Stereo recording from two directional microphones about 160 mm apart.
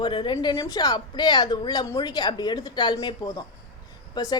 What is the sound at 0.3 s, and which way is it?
Speech, 20° left (ahead or behind).